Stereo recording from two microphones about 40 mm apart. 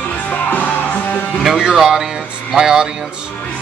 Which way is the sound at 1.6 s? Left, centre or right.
Centre.